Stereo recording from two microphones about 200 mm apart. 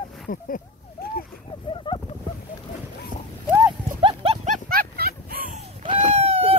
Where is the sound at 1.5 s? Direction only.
25° left (ahead or behind).